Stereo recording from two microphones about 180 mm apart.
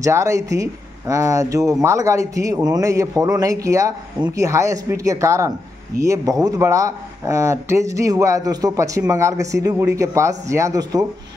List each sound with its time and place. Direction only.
0.0 s speech: 15° right (ahead or behind)